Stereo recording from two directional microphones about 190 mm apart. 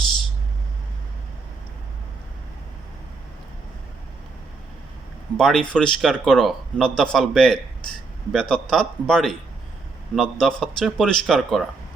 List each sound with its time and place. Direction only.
5.4 s speech: 5° left (ahead or behind)